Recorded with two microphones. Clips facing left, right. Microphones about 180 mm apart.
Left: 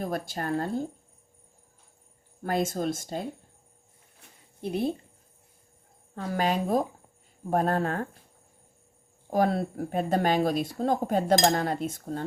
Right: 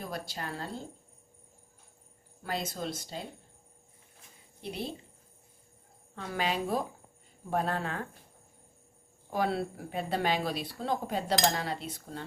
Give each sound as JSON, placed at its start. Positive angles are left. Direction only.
{"t": 0.0, "sound": "speech", "side_deg": 50}
{"t": 2.4, "sound": "speech", "side_deg": 50}
{"t": 4.2, "sound": "a sound", "side_deg": 50}
{"t": 6.1, "sound": "speech", "side_deg": 45}
{"t": 9.3, "sound": "speech", "side_deg": 45}